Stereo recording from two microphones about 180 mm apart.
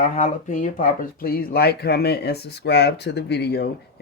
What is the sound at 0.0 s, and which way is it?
Speech, 45° left (ahead or behind).